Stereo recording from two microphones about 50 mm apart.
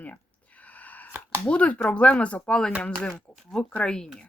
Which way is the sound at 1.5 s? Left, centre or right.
Left.